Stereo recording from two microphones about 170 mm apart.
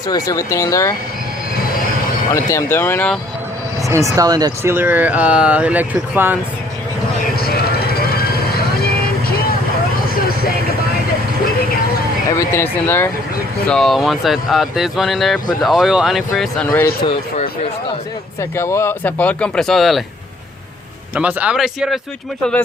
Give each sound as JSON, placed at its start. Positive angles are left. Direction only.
{"t": 0.1, "sound": "speech", "side_deg": 20}
{"t": 2.3, "sound": "speech", "side_deg": 20}
{"t": 3.8, "sound": "speech", "side_deg": -20}
{"t": 7.4, "sound": "vehicle", "side_deg": 65}
{"t": 12.4, "sound": "speech", "side_deg": 15}
{"t": 17.3, "sound": "a sound", "side_deg": 35}
{"t": 18.5, "sound": "speech", "side_deg": 15}
{"t": 21.2, "sound": "speech", "side_deg": -10}